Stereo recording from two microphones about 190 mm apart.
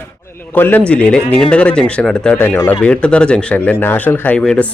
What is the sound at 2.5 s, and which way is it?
Speech, 20° left (ahead or behind).